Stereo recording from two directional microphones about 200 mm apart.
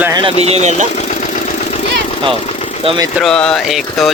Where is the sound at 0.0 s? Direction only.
20° right (ahead or behind).